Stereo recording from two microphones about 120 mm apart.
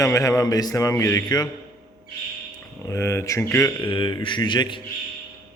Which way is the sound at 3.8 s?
45° left (ahead or behind).